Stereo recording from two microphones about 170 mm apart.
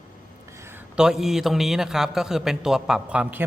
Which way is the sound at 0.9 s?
5° right (ahead or behind).